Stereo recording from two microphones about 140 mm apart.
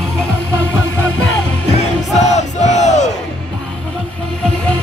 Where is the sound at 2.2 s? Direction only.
55° left (ahead or behind).